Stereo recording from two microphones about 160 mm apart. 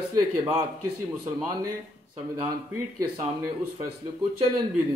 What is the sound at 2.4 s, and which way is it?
Speech, 20° right (ahead or behind).